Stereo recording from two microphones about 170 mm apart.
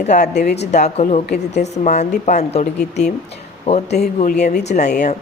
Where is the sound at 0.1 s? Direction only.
45° left (ahead or behind).